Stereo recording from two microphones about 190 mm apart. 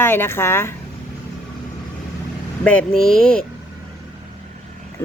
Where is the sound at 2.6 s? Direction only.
5° left (ahead or behind).